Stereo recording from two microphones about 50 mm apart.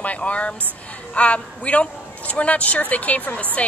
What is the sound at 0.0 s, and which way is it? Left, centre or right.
Speech, left.